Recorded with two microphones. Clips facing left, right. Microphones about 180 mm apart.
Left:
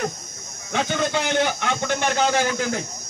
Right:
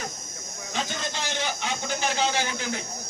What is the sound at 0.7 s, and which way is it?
A man's voice, 65° left (ahead or behind).